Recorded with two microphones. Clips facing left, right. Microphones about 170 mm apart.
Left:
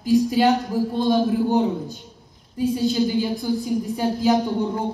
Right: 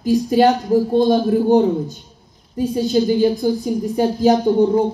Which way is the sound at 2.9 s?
40° right (ahead or behind).